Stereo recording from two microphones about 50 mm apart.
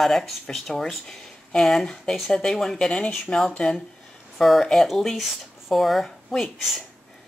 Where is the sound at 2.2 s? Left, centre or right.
Centre.